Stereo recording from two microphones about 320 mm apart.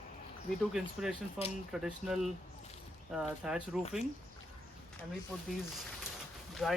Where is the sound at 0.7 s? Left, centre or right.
Centre.